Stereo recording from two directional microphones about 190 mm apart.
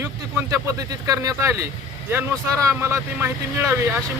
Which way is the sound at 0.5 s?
20° right (ahead or behind).